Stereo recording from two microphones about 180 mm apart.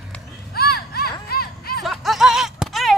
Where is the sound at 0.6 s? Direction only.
60° left (ahead or behind).